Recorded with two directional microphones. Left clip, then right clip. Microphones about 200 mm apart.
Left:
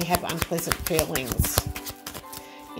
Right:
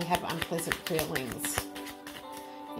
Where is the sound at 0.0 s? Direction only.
35° left (ahead or behind).